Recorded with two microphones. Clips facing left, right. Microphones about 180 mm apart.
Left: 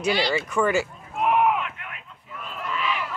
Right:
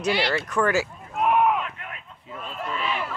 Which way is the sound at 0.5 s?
Centre (ahead or behind).